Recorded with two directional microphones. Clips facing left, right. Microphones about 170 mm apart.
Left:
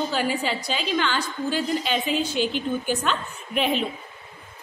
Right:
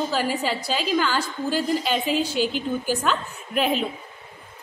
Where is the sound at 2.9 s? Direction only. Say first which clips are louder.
Right 1 dB; 5° right (ahead or behind).